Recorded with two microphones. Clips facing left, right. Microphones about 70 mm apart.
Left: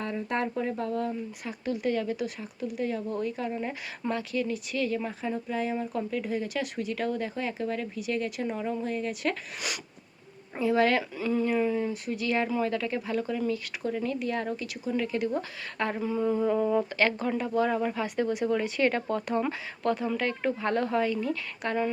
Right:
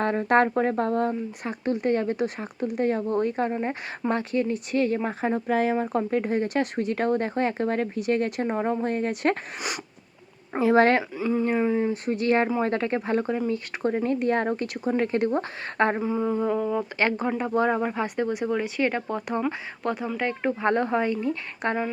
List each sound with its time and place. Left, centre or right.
0.0 s speech: right
5.7 s speech: right
9.6 s speech: right
10.6 s speech: right
11.1 s speech: right
12.1 s speech: right
16.0 s a sound: right
17.0 s speech: right
21.6 s speech: right